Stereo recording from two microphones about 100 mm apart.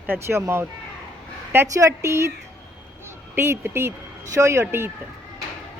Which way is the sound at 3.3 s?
25° right (ahead or behind).